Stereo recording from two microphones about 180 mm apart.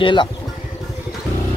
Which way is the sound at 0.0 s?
25° left (ahead or behind).